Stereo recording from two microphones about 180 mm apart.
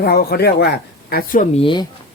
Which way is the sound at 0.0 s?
60° left (ahead or behind).